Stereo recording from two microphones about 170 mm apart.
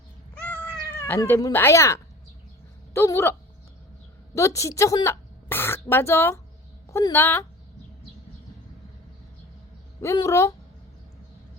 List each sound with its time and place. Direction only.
0.3 s cat: 5° left (ahead or behind)
2.9 s a woman's voice: 15° left (ahead or behind)
4.4 s a woman's voice: 15° left (ahead or behind)
10.0 s a woman's voice: 15° left (ahead or behind)